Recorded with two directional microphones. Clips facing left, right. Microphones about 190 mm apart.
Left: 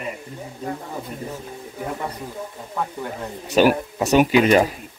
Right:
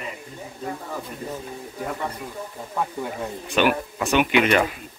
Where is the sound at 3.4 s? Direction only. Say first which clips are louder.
Left 5 dB; 40° left (ahead or behind).